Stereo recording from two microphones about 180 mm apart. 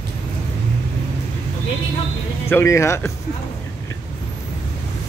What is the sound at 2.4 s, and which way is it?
Speech, 15° left (ahead or behind).